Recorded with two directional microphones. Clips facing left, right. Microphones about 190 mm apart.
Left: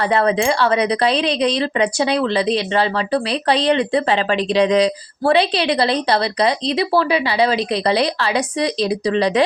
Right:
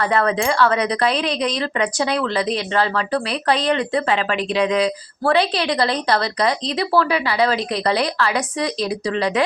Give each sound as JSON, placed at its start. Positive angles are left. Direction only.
{"t": 0.1, "sound": "a woman's voice", "side_deg": 20}